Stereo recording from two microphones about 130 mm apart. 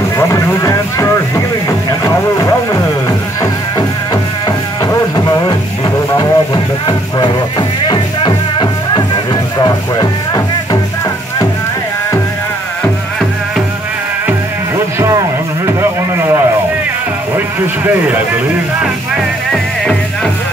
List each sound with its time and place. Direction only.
0.2 s boat: 25° left (ahead or behind)
1.9 s music: 25° left (ahead or behind)
15.0 s a sound: 25° right (ahead or behind)
19.5 s speech: centre (ahead or behind)